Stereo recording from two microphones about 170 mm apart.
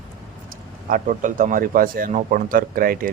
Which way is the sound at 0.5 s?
55° right (ahead or behind).